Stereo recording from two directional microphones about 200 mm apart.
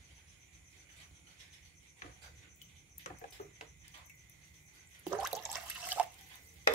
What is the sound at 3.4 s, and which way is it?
Bird, 35° left (ahead or behind).